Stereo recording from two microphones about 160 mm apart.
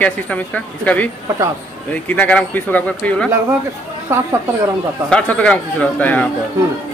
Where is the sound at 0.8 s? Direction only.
10° left (ahead or behind).